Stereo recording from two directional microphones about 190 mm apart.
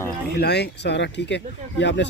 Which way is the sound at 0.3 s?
60° left (ahead or behind).